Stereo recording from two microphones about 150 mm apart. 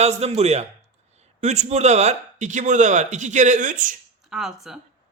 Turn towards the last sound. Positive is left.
turn(degrees=0)  # may be behind; listen again after turning